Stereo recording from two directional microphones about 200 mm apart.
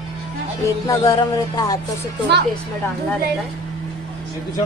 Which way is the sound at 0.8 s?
20° left (ahead or behind).